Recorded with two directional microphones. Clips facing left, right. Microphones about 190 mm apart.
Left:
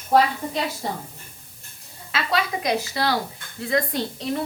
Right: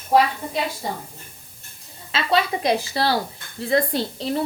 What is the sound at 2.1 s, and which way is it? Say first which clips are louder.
A woman's voice: right 3 dB; 25° right (ahead or behind).